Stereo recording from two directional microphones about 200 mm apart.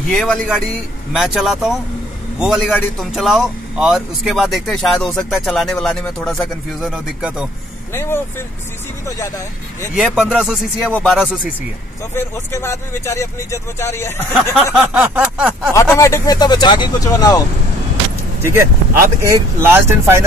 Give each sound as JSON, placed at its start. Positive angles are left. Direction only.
{"t": 0.1, "sound": "a man's voice", "side_deg": 0}
{"t": 7.9, "sound": "speech", "side_deg": 10}
{"t": 9.9, "sound": "a man's voice", "side_deg": -5}
{"t": 14.5, "sound": "a man's voice", "side_deg": -5}
{"t": 15.7, "sound": "speech", "side_deg": 15}
{"t": 18.4, "sound": "speech", "side_deg": -15}